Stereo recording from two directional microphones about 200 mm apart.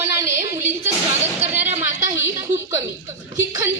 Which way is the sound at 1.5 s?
10° right (ahead or behind).